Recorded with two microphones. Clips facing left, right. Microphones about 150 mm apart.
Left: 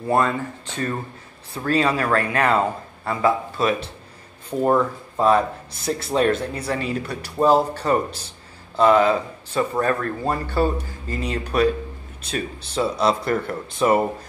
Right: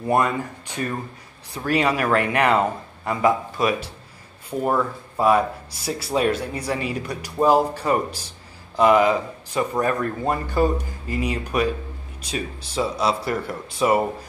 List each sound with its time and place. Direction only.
0.1 s speech: 15° right (ahead or behind)